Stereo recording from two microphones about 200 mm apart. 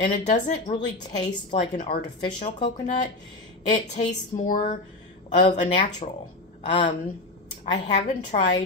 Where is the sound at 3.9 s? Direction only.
35° left (ahead or behind).